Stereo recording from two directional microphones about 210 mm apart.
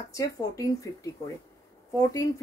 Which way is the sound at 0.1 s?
15° left (ahead or behind).